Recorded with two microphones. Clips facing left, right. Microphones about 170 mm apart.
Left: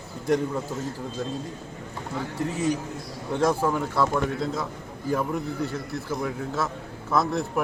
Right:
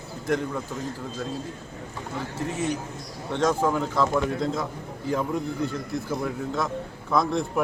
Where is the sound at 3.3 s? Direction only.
10° left (ahead or behind).